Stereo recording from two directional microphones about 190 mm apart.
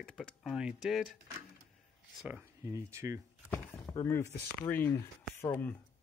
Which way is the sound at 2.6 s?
15° right (ahead or behind).